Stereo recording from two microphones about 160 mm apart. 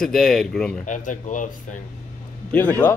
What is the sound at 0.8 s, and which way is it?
Speech, 50° left (ahead or behind).